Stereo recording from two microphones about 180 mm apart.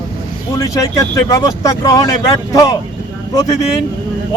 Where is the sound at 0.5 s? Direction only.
15° left (ahead or behind).